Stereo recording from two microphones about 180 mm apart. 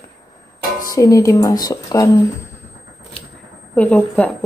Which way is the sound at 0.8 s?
20° left (ahead or behind).